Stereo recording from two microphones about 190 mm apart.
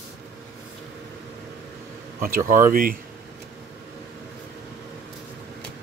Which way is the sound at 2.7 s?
50° right (ahead or behind).